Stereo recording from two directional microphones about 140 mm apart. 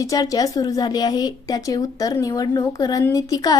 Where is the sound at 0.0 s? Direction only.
25° left (ahead or behind).